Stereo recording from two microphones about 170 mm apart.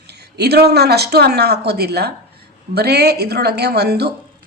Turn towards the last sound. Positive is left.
turn(degrees=-70)  # may be behind; listen again after turning